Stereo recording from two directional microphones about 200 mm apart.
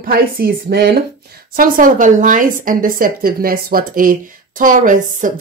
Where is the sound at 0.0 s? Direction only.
50° right (ahead or behind).